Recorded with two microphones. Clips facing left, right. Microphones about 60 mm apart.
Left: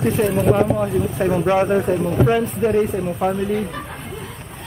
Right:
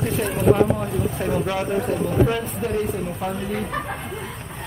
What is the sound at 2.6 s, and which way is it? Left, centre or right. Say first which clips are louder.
Speech: left 7 dB; left.